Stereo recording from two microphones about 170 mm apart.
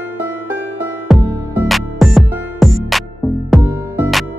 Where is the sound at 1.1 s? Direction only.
Centre (ahead or behind).